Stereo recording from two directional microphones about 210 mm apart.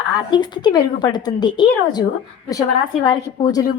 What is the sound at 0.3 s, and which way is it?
A woman's voice, 20° left (ahead or behind).